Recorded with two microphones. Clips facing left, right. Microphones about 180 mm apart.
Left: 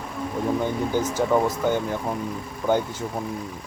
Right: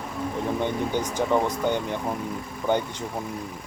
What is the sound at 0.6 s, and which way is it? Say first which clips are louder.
Speech: left 2 dB; 5° left (ahead or behind).